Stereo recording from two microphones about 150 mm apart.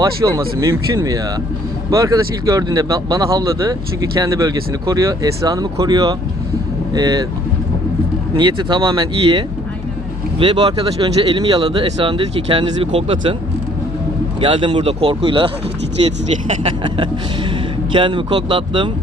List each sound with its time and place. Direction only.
0.0 s speech: 20° right (ahead or behind)
8.4 s speech: 30° right (ahead or behind)
14.4 s speech: 35° right (ahead or behind)
16.6 s speech: 35° right (ahead or behind)